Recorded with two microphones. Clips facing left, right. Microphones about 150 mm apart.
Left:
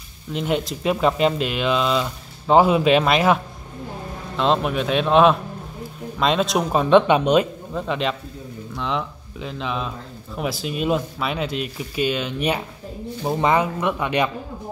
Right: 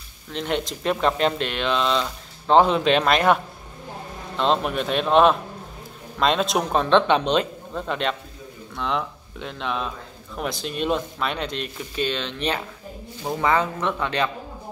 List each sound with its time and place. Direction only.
0.3 s speech: 5° left (ahead or behind)
4.4 s speech: centre (ahead or behind)